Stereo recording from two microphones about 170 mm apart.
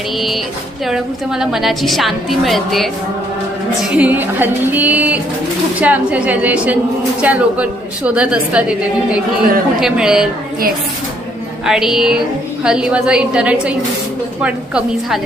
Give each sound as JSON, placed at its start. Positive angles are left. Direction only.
{"t": 0.9, "sound": "a woman's voice", "side_deg": -5}
{"t": 3.8, "sound": "music", "side_deg": -5}
{"t": 9.8, "sound": "a woman's voice", "side_deg": -5}
{"t": 11.6, "sound": "a woman's voice", "side_deg": -5}